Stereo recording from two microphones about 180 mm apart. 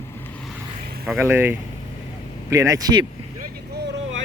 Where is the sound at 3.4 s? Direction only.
65° right (ahead or behind).